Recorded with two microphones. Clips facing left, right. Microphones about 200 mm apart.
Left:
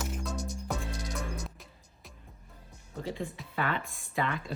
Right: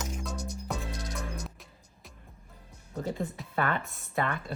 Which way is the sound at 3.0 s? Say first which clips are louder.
Right 2 dB; 45° right (ahead or behind).